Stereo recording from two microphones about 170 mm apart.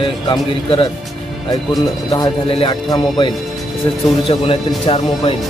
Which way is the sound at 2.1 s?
30° left (ahead or behind).